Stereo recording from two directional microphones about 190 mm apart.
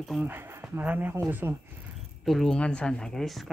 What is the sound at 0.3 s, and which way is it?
Speech, 10° right (ahead or behind).